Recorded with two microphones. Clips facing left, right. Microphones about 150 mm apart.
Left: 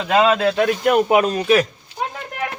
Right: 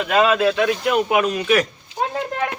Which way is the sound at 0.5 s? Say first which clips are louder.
Left 2 dB; 45° left (ahead or behind).